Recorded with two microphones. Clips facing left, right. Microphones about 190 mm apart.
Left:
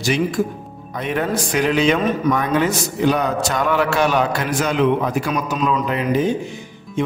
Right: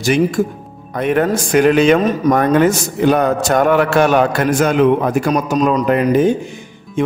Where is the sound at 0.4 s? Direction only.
50° right (ahead or behind).